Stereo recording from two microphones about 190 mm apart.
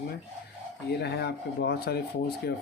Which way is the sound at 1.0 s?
60° left (ahead or behind).